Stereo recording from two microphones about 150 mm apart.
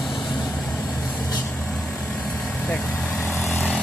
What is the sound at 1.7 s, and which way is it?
Vehicle, centre (ahead or behind).